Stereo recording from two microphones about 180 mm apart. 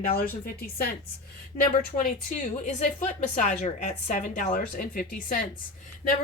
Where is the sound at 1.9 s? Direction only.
45° left (ahead or behind).